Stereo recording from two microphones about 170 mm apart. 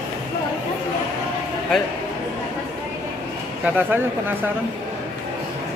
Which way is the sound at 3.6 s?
10° right (ahead or behind).